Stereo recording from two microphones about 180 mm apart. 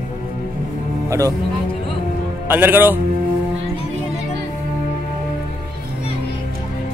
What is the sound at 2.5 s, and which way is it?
Speech, 10° right (ahead or behind).